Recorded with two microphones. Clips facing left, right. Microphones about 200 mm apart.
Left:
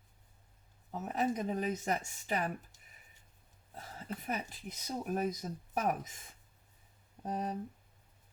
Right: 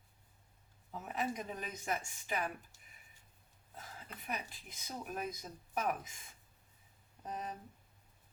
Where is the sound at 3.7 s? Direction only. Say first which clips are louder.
Left 8 dB; 40° left (ahead or behind).